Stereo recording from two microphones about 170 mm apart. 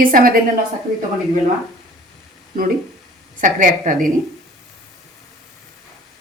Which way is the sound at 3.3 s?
50° right (ahead or behind).